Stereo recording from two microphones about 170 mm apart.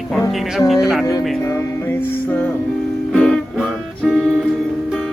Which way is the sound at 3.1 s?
5° left (ahead or behind).